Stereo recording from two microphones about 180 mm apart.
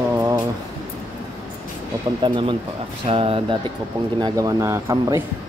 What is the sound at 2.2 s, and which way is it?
Speech, 25° right (ahead or behind).